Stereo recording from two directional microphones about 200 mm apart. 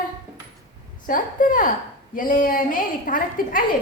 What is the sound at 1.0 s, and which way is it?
A woman's voice, 45° left (ahead or behind).